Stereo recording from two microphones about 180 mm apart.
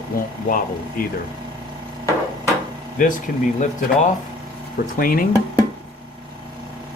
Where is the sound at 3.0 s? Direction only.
50° left (ahead or behind).